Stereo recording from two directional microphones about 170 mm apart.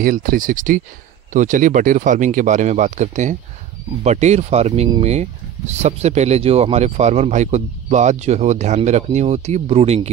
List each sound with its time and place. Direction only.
0.0 s speech: 55° right (ahead or behind); by 10.0 s 35° right (ahead or behind)